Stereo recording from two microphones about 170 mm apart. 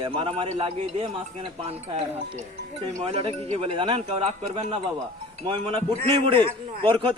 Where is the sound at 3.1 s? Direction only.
35° right (ahead or behind).